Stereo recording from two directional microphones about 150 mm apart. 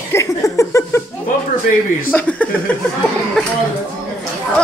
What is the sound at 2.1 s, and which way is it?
Speech, 10° left (ahead or behind).